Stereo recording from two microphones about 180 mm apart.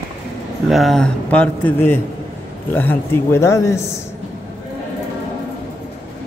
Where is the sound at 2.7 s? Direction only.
10° left (ahead or behind).